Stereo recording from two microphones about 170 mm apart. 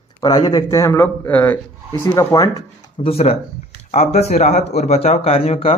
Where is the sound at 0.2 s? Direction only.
20° left (ahead or behind).